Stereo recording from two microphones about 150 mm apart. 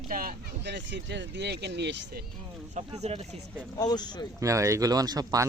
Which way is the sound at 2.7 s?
50° right (ahead or behind).